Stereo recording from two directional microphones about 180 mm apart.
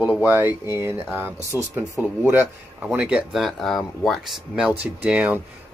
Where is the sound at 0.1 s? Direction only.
10° right (ahead or behind).